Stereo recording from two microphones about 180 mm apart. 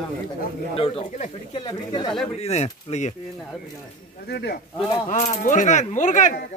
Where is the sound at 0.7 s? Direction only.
35° left (ahead or behind).